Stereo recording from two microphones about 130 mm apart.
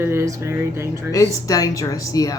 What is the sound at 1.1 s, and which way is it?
Speech, 25° left (ahead or behind).